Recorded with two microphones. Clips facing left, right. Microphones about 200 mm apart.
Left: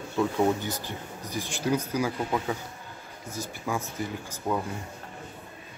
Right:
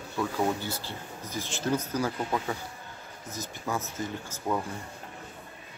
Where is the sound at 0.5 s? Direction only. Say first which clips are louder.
Left 2 dB; 15° left (ahead or behind).